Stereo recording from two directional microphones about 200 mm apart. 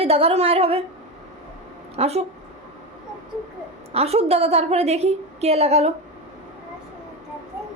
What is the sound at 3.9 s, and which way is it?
A woman's voice, 30° right (ahead or behind).